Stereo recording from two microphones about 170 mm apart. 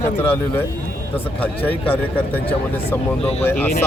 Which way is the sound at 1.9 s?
10° left (ahead or behind).